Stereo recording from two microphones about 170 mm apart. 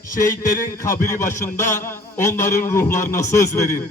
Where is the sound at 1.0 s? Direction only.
15° left (ahead or behind).